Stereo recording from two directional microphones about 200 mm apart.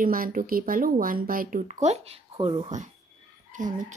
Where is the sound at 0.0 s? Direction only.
45° right (ahead or behind).